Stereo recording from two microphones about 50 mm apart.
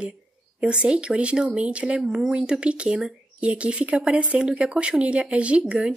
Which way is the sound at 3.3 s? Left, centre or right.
Right.